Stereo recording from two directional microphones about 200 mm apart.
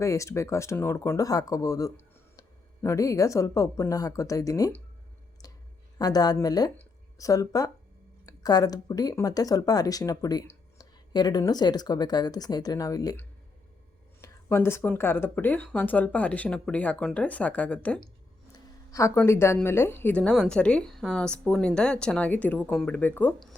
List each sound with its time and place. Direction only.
0.0 s speech: 15° left (ahead or behind)
6.0 s speech: 20° left (ahead or behind)